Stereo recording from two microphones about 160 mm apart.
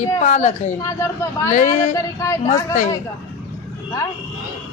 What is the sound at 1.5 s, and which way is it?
Speech, 50° left (ahead or behind).